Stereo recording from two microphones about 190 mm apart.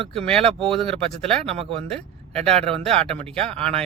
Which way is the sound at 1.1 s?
5° left (ahead or behind).